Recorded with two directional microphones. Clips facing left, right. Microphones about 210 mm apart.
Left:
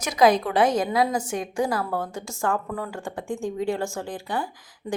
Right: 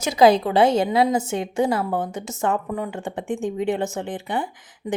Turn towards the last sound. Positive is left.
turn(degrees=-20)  # may be behind; listen again after turning